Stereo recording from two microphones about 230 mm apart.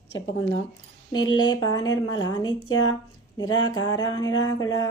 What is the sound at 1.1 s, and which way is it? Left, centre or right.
A woman's voice, centre.